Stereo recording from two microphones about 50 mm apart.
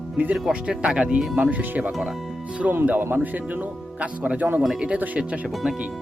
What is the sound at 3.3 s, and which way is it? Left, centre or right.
Speech, right.